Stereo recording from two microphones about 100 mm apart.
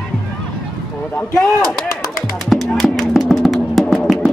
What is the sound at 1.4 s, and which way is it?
Speech, 5° left (ahead or behind).